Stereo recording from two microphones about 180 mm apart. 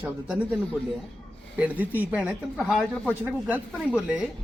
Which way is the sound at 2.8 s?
5° left (ahead or behind).